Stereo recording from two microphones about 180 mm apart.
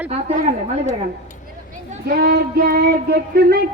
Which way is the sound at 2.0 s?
65° right (ahead or behind).